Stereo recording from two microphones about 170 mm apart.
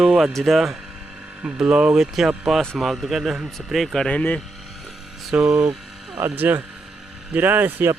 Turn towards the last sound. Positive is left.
turn(degrees=-10)  # may be behind; listen again after turning